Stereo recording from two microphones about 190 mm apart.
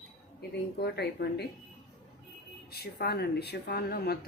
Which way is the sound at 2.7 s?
55° left (ahead or behind).